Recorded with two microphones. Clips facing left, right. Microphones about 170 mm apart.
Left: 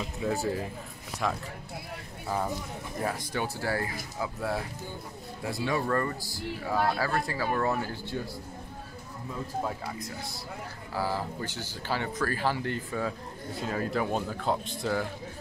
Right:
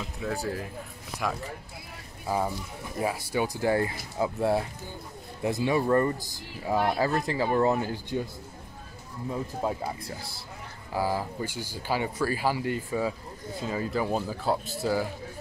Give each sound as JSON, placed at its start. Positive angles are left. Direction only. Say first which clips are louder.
{"t": 0.0, "sound": "speech", "louder": "left 2 dB", "side_deg": 5}
{"t": 2.3, "sound": "speech", "louder": "right 2 dB", "side_deg": -10}
{"t": 9.6, "sound": "speech", "louder": "right 3 dB", "side_deg": -25}
{"t": 10.9, "sound": "speech", "louder": "right 3 dB", "side_deg": -15}